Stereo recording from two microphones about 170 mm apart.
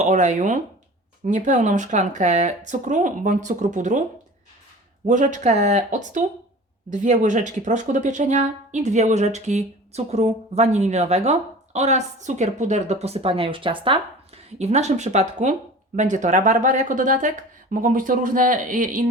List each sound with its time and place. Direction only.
0.0 s speech: 45° right (ahead or behind)
5.0 s speech: 45° right (ahead or behind); by 14.0 s 30° right (ahead or behind)
14.6 s speech: 40° right (ahead or behind)